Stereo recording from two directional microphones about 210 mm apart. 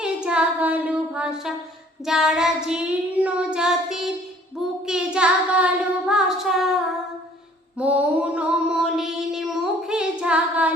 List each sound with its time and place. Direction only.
0.0 s child singing: 5° right (ahead or behind)
7.8 s mantra: 5° right (ahead or behind)